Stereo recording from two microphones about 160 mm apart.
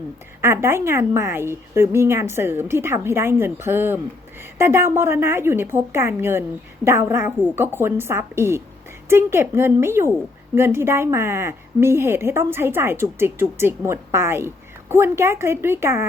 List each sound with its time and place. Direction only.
0.4 s a woman's voice: 15° right (ahead or behind)